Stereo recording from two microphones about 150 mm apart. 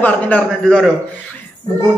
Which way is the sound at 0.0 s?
10° left (ahead or behind).